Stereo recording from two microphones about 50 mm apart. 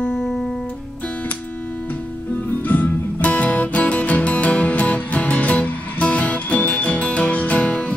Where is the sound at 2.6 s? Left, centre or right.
Left.